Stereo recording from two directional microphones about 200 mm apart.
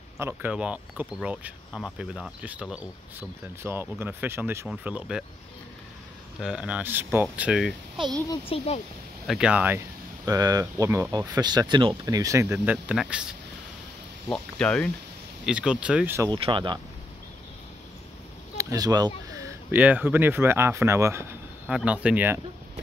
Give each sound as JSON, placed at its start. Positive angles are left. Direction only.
{"t": 0.2, "sound": "speech", "side_deg": -10}
{"t": 6.4, "sound": "speech", "side_deg": -5}
{"t": 8.5, "sound": "speech", "side_deg": 30}
{"t": 9.3, "sound": "speech", "side_deg": -5}
{"t": 16.3, "sound": "speech", "side_deg": -25}
{"t": 18.6, "sound": "a sound", "side_deg": -15}
{"t": 19.7, "sound": "speech", "side_deg": -10}